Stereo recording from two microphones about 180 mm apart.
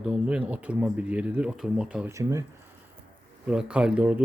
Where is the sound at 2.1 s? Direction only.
15° right (ahead or behind).